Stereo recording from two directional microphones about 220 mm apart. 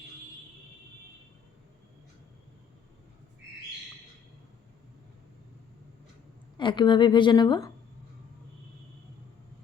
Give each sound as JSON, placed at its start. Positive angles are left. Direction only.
{"t": 6.6, "sound": "a woman's voice", "side_deg": 20}